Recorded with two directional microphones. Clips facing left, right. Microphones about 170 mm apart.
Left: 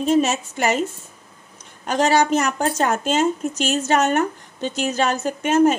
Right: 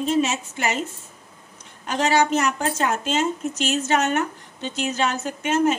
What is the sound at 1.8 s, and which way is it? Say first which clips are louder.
A woman's voice: left 3 dB; 40° left (ahead or behind).